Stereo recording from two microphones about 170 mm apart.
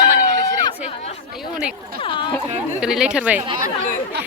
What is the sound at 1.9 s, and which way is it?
Speech, 30° left (ahead or behind).